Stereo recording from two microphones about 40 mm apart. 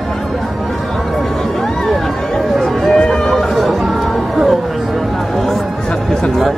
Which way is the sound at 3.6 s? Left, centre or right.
Centre.